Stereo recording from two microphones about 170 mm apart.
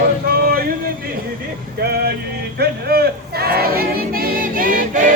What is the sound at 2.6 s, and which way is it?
Choir, 65° right (ahead or behind).